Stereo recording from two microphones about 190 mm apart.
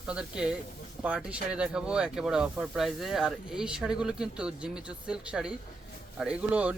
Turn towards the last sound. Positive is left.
turn(degrees=-5)  # may be behind; listen again after turning